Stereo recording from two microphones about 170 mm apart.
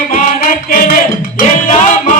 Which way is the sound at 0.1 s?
55° left (ahead or behind).